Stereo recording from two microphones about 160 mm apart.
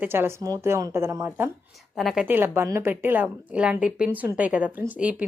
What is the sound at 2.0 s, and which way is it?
Speech, centre (ahead or behind).